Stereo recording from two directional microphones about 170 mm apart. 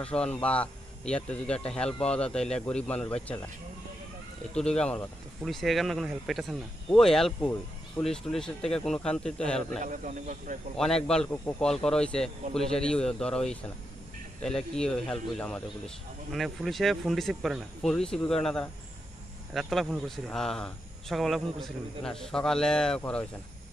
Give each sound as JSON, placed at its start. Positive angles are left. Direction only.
{"t": 0.0, "sound": "speech", "side_deg": 5}
{"t": 4.6, "sound": "speech", "side_deg": 5}
{"t": 9.8, "sound": "speech", "side_deg": -50}
{"t": 11.1, "sound": "speech", "side_deg": 5}